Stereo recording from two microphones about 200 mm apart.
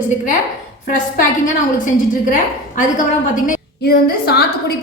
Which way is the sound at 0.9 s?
40° left (ahead or behind).